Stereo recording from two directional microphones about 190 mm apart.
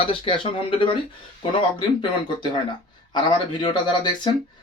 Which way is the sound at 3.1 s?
25° left (ahead or behind).